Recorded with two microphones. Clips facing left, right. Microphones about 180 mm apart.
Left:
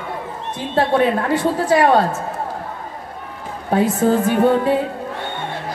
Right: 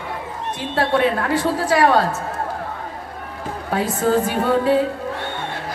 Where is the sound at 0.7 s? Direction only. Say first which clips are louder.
Left 2 dB; 20° left (ahead or behind).